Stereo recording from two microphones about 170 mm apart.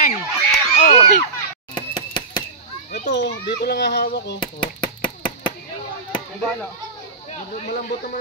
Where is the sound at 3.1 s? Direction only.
90° left; by 4.4 s 75° left (ahead or behind).